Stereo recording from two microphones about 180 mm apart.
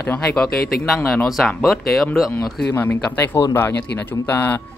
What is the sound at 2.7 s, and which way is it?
Speech, 15° left (ahead or behind).